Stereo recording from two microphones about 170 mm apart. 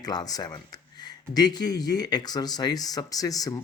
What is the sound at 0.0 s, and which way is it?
Speech, 25° left (ahead or behind).